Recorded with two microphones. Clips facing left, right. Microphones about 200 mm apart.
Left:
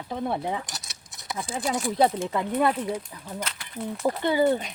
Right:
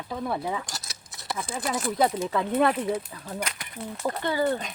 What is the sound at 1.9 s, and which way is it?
Speech, 25° left (ahead or behind).